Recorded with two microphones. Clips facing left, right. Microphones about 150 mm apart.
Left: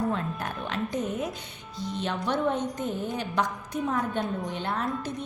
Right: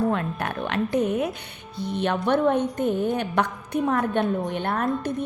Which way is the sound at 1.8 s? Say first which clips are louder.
Right 6 dB; 60° right (ahead or behind).